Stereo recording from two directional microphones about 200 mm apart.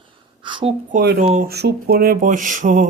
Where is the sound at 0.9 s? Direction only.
40° right (ahead or behind).